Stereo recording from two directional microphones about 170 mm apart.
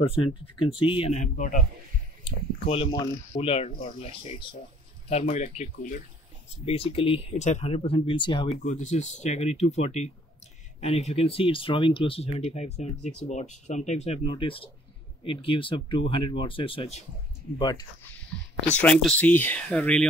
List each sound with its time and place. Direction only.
0.0 s speech: 30° left (ahead or behind); by 1.7 s 50° left (ahead or behind)
2.2 s speech: 35° left (ahead or behind)
6.6 s speech: 35° left (ahead or behind)
8.6 s speech: 45° left (ahead or behind)
17.6 s speech: 25° left (ahead or behind)
18.8 s speech: 5° left (ahead or behind)